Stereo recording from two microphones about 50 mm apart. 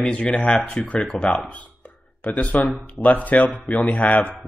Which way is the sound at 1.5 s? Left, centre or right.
Left.